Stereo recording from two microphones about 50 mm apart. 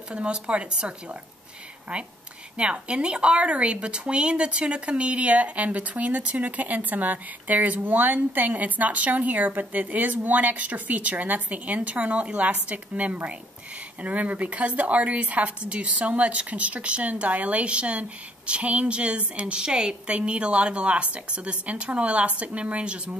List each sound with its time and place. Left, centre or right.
0.1 s speech: right
2.5 s speech: right